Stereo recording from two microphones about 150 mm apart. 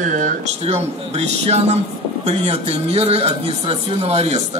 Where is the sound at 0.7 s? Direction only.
40° right (ahead or behind).